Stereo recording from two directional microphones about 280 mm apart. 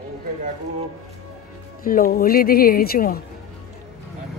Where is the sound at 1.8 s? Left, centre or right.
Left.